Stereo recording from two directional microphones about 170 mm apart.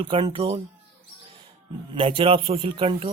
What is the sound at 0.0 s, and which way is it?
Speech, 35° right (ahead or behind).